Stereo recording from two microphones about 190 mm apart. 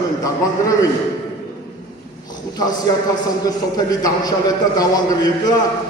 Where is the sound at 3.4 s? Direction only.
20° left (ahead or behind).